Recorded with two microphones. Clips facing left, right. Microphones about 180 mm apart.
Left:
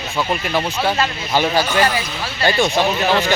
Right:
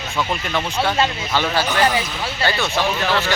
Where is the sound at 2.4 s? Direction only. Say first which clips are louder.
Left 5 dB; 15° left (ahead or behind).